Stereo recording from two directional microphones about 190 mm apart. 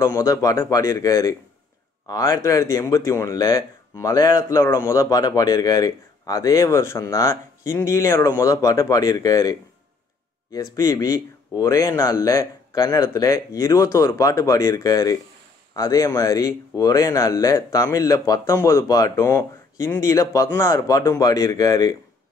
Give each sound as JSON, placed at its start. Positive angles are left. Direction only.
{"t": 0.0, "sound": "speech", "side_deg": 15}